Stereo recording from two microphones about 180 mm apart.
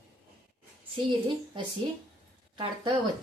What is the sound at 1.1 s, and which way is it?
Speech, 25° right (ahead or behind).